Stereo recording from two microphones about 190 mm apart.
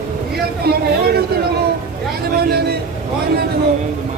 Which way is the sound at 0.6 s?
55° right (ahead or behind).